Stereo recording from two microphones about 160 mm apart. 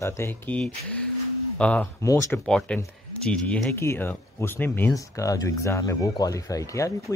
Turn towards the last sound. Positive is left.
turn(degrees=20)  # may be behind; listen again after turning